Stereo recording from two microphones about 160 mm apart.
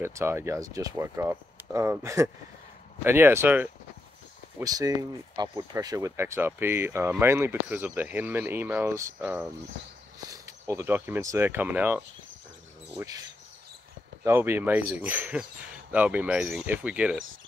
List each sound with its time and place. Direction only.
0.0 s speech: 15° right (ahead or behind)
4.6 s speech: 25° right (ahead or behind)
14.2 s speech: 15° right (ahead or behind)